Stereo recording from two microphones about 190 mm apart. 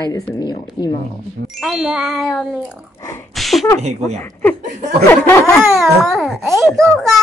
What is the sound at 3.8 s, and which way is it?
Speech, 35° right (ahead or behind).